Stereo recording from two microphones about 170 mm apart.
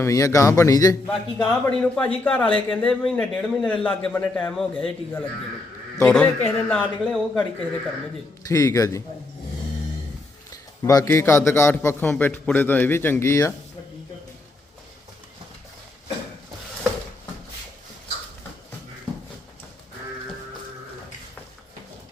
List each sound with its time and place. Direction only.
0.0 s a man's voice: 20° left (ahead or behind)
1.0 s a man's voice: 10° left (ahead or behind)
8.4 s speech: 20° left (ahead or behind)
10.5 s a man's voice: 20° left (ahead or behind)